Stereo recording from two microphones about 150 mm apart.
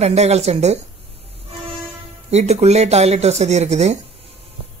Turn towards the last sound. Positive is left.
turn(degrees=-45)  # may be behind; listen again after turning